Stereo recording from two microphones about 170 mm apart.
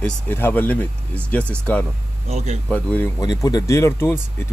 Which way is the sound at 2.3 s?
40° right (ahead or behind).